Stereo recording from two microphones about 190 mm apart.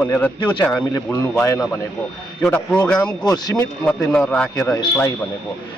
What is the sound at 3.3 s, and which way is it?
Speech, 20° left (ahead or behind).